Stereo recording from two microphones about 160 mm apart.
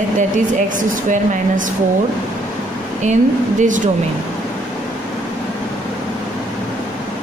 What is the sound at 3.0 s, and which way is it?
Speech, 50° right (ahead or behind).